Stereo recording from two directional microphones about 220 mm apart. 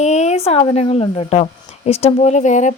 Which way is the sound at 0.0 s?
30° left (ahead or behind).